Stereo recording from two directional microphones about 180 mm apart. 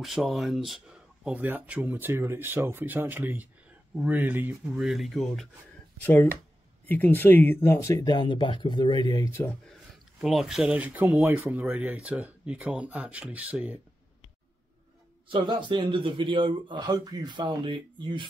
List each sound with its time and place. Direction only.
0.0 s speech: centre (ahead or behind)
6.9 s speech: 10° left (ahead or behind)
10.2 s speech: centre (ahead or behind)
15.2 s speech: 25° right (ahead or behind)